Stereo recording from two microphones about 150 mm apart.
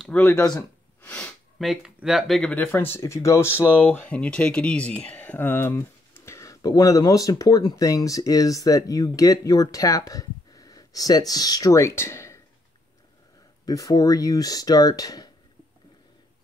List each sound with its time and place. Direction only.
0.0 s speech: 10° left (ahead or behind)
0.3 s gasp: 20° left (ahead or behind)
1.6 s speech: 5° right (ahead or behind)
2.5 s speech: 10° left (ahead or behind)
13.7 s speech: 25° left (ahead or behind)